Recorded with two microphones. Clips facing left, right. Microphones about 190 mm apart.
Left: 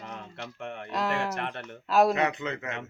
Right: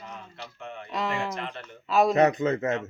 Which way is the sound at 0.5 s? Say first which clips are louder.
Left 2 dB; 70° left (ahead or behind).